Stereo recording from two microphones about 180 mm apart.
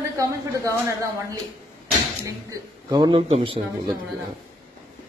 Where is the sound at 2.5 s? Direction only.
20° right (ahead or behind).